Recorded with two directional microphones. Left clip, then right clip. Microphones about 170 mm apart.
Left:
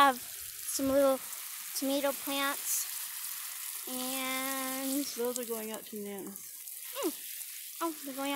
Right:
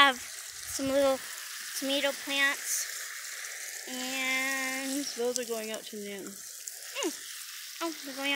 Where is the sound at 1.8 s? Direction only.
20° left (ahead or behind).